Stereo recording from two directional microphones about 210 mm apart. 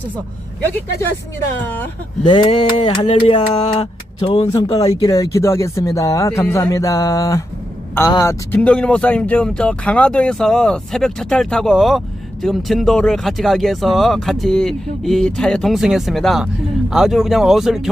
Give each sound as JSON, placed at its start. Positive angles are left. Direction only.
{"t": 2.2, "sound": "speech", "side_deg": 25}